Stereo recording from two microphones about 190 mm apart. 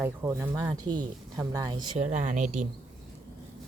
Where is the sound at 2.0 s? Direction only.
40° right (ahead or behind).